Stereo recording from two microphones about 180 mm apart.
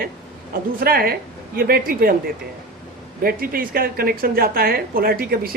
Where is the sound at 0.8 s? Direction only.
55° right (ahead or behind).